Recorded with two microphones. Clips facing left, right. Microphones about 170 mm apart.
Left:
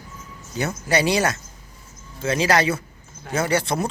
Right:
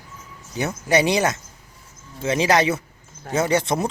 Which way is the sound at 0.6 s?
20° right (ahead or behind).